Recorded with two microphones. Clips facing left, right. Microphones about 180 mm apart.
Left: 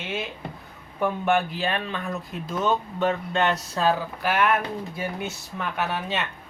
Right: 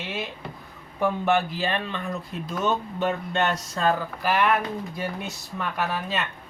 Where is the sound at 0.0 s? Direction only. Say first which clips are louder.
Left 1 dB; centre (ahead or behind).